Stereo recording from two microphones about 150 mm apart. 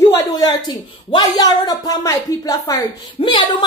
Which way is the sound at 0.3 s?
25° left (ahead or behind).